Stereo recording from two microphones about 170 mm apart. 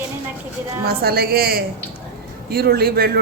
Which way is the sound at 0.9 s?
65° right (ahead or behind).